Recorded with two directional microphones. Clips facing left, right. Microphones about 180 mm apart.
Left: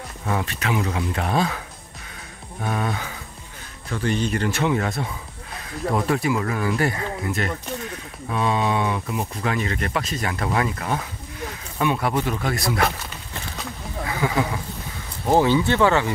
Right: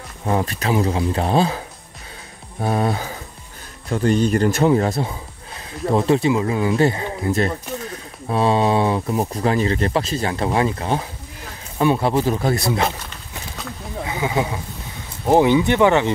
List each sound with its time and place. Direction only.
0.2 s speech: 30° right (ahead or behind)
2.6 s speech: 35° right (ahead or behind)
14.0 s speech: 20° right (ahead or behind)